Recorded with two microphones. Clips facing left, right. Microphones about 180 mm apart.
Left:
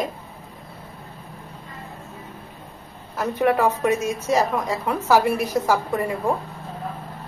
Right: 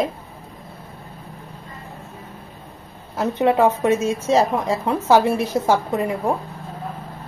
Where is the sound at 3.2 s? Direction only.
20° right (ahead or behind).